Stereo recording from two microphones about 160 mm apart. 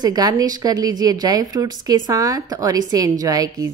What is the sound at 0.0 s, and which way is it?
Speech, 25° right (ahead or behind).